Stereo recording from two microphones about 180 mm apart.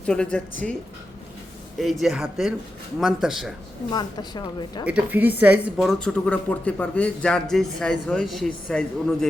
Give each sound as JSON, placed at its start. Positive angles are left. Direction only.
{"t": 0.0, "sound": "speech", "side_deg": 5}
{"t": 1.8, "sound": "speech", "side_deg": 0}
{"t": 3.9, "sound": "speech", "side_deg": 25}
{"t": 4.9, "sound": "speech", "side_deg": -10}